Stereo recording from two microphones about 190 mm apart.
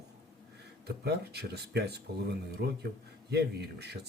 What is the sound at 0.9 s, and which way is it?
Speech, 60° right (ahead or behind).